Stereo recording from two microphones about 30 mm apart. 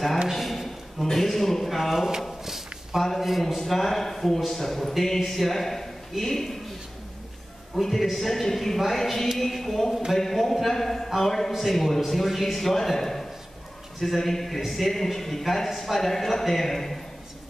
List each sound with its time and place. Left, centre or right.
0.3 s a sound: centre
1.1 s speech: centre
1.9 s speech: centre
2.4 s a sound: centre
3.2 s a man's voice: centre
7.8 s a man's voice: centre
14.9 s speech: centre